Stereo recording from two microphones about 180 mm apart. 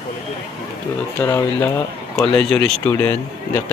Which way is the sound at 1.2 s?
15° left (ahead or behind).